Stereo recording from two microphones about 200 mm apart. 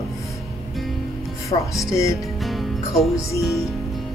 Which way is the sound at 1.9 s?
15° left (ahead or behind).